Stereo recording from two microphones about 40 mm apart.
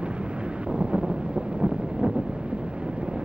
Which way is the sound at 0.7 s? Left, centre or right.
Right.